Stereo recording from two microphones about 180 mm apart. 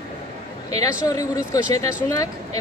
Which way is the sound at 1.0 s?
20° left (ahead or behind).